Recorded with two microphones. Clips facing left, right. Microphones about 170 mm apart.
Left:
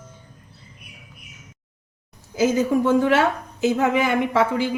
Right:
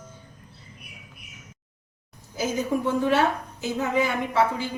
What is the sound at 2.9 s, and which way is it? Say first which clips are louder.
A woman's voice: left 1 dB; 90° left.